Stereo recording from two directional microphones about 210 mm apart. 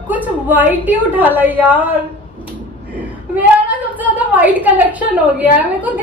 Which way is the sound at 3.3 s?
5° right (ahead or behind).